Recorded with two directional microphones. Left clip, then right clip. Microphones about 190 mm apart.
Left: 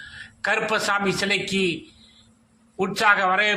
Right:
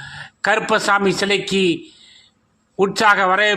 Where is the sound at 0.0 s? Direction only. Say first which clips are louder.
Right 6 dB; 40° right (ahead or behind).